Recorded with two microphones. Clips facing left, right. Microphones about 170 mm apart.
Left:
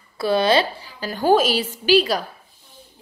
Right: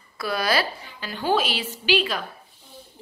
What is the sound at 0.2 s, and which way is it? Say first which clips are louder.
A woman's voice: left 7 dB; 25° left (ahead or behind).